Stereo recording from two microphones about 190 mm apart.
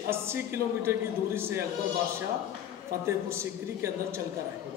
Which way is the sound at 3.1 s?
15° right (ahead or behind).